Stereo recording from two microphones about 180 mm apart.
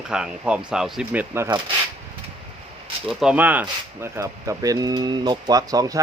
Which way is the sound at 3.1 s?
5° right (ahead or behind).